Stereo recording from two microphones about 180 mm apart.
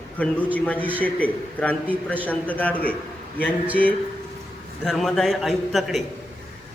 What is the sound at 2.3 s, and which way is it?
Speech, 10° left (ahead or behind).